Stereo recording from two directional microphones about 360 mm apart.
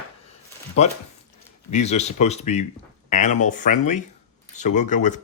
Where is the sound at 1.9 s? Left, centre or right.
Centre.